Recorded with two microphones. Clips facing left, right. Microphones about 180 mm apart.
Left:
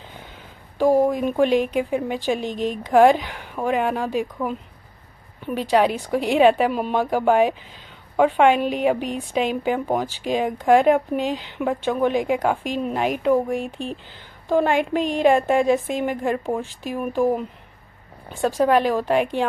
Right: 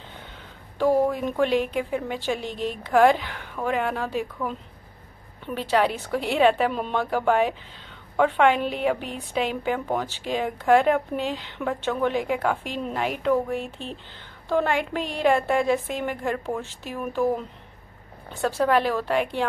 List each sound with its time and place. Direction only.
0.7 s a woman's voice: 15° left (ahead or behind)